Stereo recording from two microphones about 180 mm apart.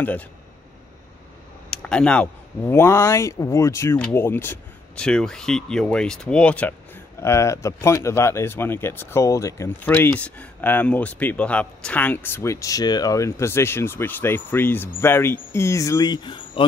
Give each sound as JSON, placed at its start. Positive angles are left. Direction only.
{"t": 0.0, "sound": "speech", "side_deg": 10}
{"t": 1.7, "sound": "a sound", "side_deg": 5}
{"t": 2.6, "sound": "speech", "side_deg": 15}